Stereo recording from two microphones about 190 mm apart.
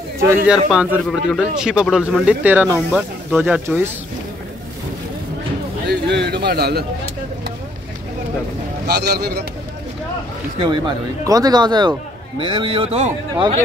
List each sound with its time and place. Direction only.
0.3 s a man's voice: 5° right (ahead or behind)
5.9 s a sound: 60° right (ahead or behind)
8.8 s a man's voice: 60° right (ahead or behind)
10.6 s speech: 25° right (ahead or behind)